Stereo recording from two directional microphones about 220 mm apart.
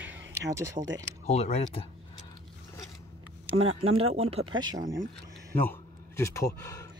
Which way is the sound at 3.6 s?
70° right (ahead or behind).